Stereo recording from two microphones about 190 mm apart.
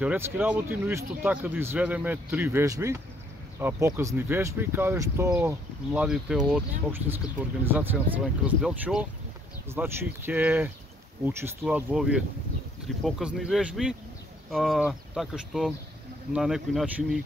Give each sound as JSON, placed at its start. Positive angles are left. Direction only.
{"t": 0.0, "sound": "speech", "side_deg": -10}